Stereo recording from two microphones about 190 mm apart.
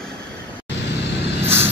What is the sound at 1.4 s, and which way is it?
Vehicle, 10° right (ahead or behind).